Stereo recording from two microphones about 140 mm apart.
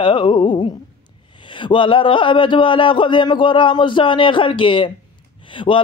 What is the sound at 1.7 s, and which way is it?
A man's voice, 35° left (ahead or behind).